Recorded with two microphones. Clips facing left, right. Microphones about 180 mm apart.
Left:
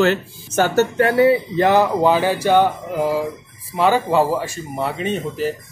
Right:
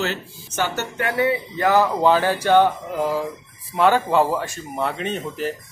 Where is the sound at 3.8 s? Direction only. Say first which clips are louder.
Left 1 dB; 5° left (ahead or behind).